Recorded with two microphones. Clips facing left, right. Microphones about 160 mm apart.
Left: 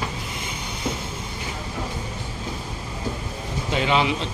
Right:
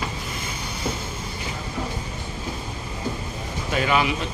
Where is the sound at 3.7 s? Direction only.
20° left (ahead or behind).